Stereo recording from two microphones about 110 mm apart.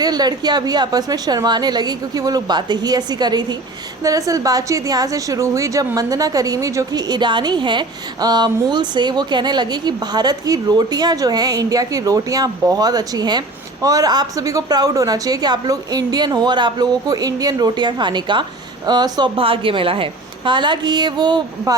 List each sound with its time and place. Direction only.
0.0 s a woman's voice: 40° right (ahead or behind)
19.4 s a woman's voice: 55° right (ahead or behind); by 21.8 s 35° right (ahead or behind)